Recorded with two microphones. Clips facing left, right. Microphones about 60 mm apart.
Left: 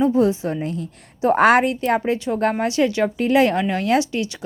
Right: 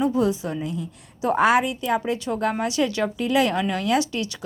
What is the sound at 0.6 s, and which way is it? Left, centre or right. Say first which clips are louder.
A woman's voice: left 3 dB; left.